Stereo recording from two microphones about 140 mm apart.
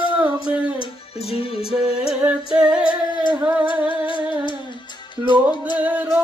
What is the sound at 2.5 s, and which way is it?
Female singing, 5° right (ahead or behind).